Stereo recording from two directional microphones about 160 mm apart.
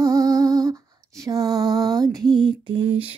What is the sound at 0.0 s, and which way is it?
Lullaby, 20° right (ahead or behind).